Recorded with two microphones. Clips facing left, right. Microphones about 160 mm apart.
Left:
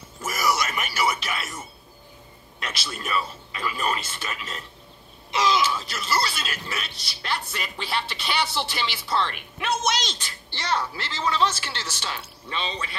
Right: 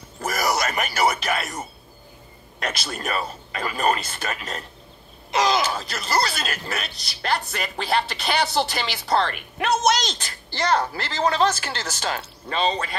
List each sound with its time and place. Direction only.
0.3 s music: 40° right (ahead or behind)
0.7 s speech: 50° right (ahead or behind)